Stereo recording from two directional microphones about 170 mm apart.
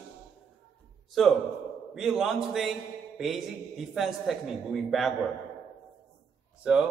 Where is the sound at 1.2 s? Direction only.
Centre (ahead or behind).